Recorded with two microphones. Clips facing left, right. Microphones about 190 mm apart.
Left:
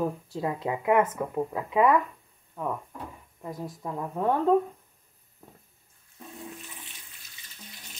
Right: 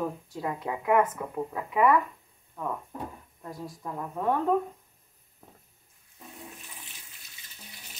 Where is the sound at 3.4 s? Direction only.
20° left (ahead or behind).